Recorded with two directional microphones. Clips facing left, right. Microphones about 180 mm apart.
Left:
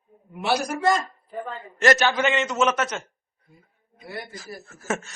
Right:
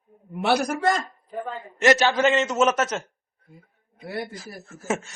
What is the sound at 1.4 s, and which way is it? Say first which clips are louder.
Speech: right 1 dB; 20° right (ahead or behind).